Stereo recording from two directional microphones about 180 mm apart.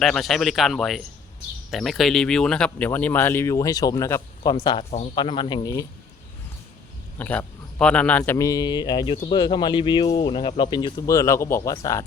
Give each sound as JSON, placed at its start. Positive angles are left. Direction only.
{"t": 0.0, "sound": "speech", "side_deg": 0}
{"t": 7.2, "sound": "speech", "side_deg": 10}